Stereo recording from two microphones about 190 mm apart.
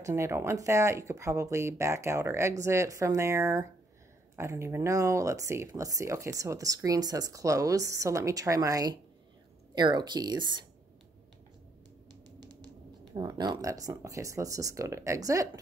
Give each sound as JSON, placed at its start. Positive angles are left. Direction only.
{"t": 0.0, "sound": "speech", "side_deg": -15}
{"t": 12.1, "sound": "music", "side_deg": -20}
{"t": 13.1, "sound": "speech", "side_deg": -20}